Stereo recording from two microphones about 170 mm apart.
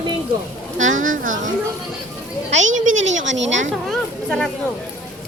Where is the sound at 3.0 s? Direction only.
90° right.